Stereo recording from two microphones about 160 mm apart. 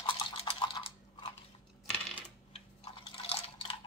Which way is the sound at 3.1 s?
35° left (ahead or behind).